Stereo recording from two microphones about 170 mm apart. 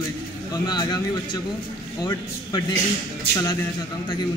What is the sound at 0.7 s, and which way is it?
Speech, 25° left (ahead or behind).